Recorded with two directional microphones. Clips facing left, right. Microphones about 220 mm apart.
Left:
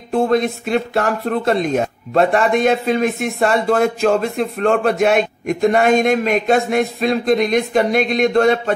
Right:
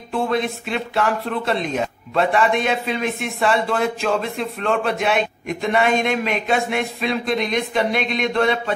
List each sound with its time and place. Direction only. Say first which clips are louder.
0.1 s speech: left 6 dB; 45° left (ahead or behind)